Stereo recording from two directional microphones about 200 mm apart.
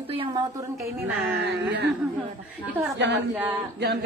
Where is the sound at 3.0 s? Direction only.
60° right (ahead or behind).